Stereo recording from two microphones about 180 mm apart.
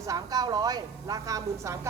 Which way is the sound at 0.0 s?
20° right (ahead or behind).